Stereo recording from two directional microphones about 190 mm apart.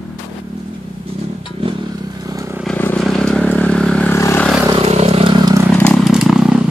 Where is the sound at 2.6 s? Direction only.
5° left (ahead or behind).